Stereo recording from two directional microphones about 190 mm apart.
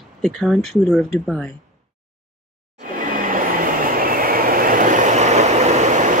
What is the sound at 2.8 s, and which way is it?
Train, 45° right (ahead or behind).